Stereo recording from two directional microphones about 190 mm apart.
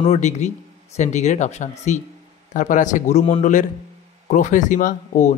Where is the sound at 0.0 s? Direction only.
35° left (ahead or behind).